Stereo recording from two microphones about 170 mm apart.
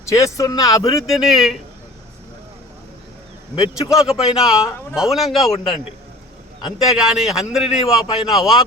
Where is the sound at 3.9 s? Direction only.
5° right (ahead or behind).